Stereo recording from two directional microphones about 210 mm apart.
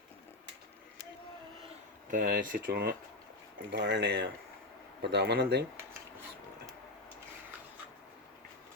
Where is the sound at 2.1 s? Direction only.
45° right (ahead or behind).